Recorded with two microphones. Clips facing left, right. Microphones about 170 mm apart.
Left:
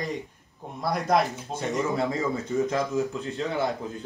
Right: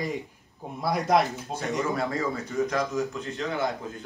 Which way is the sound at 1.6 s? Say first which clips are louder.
Left 2 dB; 20° left (ahead or behind).